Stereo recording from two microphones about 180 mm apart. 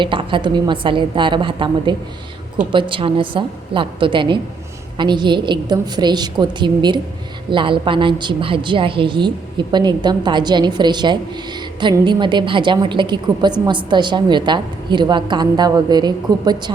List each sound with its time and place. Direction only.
0.0 s a woman's voice: 30° right (ahead or behind)